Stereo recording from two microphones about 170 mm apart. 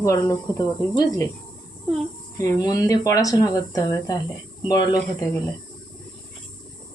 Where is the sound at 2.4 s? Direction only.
20° left (ahead or behind).